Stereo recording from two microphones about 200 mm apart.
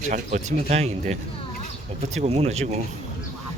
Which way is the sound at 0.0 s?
35° right (ahead or behind).